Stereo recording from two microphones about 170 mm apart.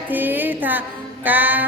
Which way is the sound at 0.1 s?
10° right (ahead or behind).